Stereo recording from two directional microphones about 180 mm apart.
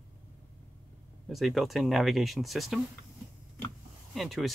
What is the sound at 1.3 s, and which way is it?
Speech, centre (ahead or behind).